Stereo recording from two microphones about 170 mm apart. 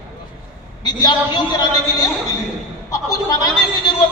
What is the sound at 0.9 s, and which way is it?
A man's voice, 25° left (ahead or behind).